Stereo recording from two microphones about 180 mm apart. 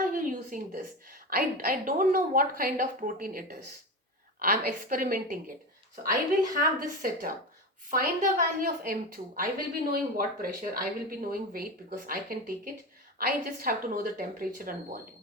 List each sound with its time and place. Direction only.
0.0 s a sound: 50° right (ahead or behind)
1.3 s speech: 55° right (ahead or behind)
6.5 s speech: 50° right (ahead or behind)